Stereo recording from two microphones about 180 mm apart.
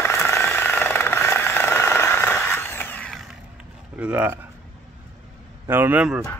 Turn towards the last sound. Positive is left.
turn(degrees=-10)  # may be behind; listen again after turning